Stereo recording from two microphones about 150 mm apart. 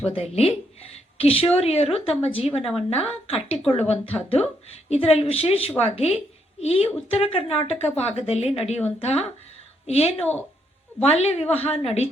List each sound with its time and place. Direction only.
0.0 s a woman's voice: 45° left (ahead or behind)